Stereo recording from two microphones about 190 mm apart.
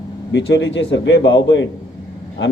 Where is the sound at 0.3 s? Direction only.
70° left (ahead or behind).